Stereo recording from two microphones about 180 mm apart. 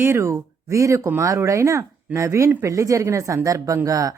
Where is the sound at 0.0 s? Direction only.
15° right (ahead or behind).